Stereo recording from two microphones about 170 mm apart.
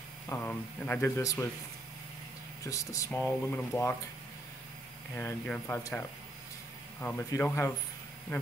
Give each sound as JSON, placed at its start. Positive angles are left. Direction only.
{"t": 0.3, "sound": "speech", "side_deg": 10}
{"t": 2.6, "sound": "speech", "side_deg": 20}
{"t": 5.1, "sound": "speech", "side_deg": 10}
{"t": 7.0, "sound": "speech", "side_deg": 10}